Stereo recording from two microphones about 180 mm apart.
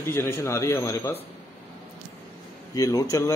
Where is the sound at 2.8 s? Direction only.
20° left (ahead or behind).